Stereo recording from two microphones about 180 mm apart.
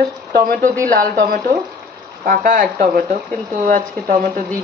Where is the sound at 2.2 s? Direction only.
45° right (ahead or behind).